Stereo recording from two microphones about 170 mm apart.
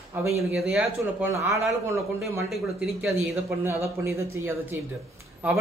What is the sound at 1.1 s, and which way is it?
Speech, 15° right (ahead or behind).